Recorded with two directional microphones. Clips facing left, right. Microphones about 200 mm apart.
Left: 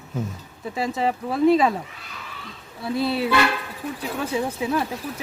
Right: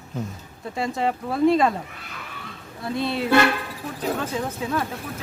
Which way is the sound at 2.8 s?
5° left (ahead or behind).